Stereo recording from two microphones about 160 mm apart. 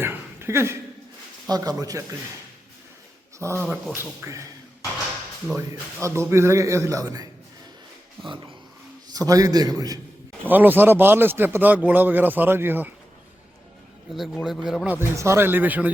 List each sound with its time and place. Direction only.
0.0 s a sound: 15° right (ahead or behind)
1.5 s a man's voice: 25° right (ahead or behind)
3.3 s speech: 20° right (ahead or behind)
5.5 s a man's voice: 15° right (ahead or behind)
9.1 s a man's voice: 20° right (ahead or behind)
10.4 s speech: 10° right (ahead or behind)
14.4 s speech: centre (ahead or behind)
14.9 s speech: 15° right (ahead or behind)